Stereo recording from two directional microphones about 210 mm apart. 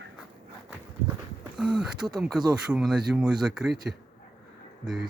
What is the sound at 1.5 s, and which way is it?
Speech, 5° right (ahead or behind).